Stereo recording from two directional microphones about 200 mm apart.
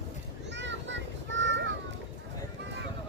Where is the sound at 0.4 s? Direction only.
65° right (ahead or behind).